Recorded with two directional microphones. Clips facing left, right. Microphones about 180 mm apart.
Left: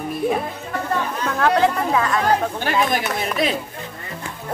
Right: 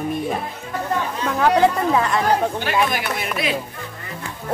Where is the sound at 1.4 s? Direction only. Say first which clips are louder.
Right 2 dB; 10° right (ahead or behind).